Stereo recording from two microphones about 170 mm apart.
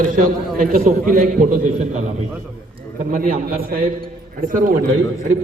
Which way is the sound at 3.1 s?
50° right (ahead or behind).